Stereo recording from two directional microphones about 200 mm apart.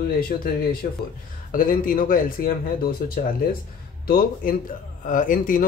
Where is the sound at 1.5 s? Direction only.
45° left (ahead or behind).